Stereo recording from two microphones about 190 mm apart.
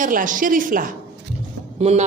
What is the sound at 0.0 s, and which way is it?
A woman's voice, 45° right (ahead or behind).